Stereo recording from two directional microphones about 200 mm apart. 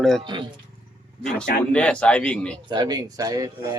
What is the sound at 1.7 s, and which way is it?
Speech, 5° left (ahead or behind).